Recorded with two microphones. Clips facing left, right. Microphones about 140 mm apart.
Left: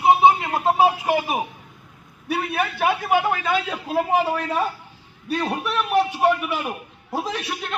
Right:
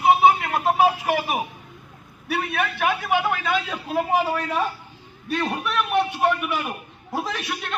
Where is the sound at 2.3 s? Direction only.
30° left (ahead or behind).